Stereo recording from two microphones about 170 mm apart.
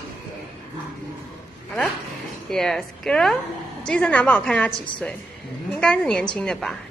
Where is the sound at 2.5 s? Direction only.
5° left (ahead or behind).